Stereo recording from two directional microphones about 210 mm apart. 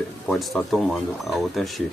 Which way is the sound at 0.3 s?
Centre (ahead or behind).